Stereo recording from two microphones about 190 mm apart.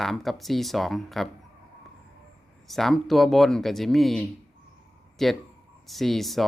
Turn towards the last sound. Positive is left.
turn(degrees=0)  # may be behind; listen again after turning